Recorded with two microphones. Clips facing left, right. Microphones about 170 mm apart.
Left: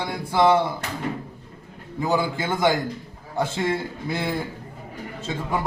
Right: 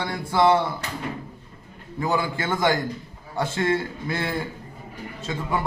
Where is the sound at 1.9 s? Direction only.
15° left (ahead or behind).